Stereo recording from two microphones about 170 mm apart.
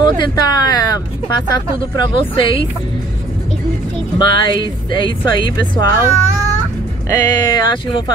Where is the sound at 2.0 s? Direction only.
30° left (ahead or behind).